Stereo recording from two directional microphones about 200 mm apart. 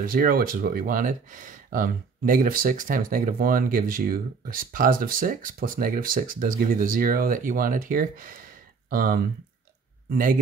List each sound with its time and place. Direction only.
0.0 s a man's voice: 45° right (ahead or behind)